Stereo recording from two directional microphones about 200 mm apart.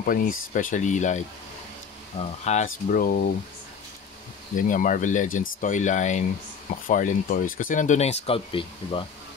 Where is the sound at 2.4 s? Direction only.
35° left (ahead or behind).